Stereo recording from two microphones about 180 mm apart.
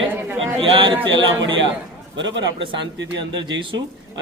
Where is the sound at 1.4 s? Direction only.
90° right.